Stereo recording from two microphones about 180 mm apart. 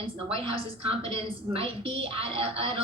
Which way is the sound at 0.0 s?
30° right (ahead or behind).